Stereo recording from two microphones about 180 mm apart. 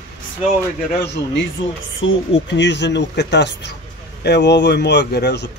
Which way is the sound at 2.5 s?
75° left (ahead or behind).